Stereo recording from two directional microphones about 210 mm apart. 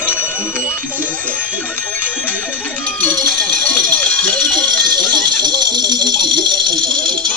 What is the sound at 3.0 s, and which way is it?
Speech, 5° left (ahead or behind).